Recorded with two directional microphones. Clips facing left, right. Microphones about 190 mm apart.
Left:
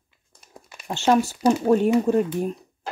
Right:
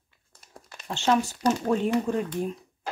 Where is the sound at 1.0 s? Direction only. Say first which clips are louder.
Left 5 dB; 40° left (ahead or behind).